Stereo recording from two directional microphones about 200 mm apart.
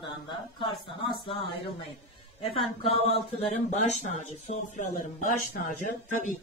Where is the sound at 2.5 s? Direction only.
Centre (ahead or behind).